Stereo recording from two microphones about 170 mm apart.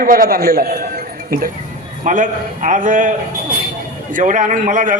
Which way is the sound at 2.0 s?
50° right (ahead or behind).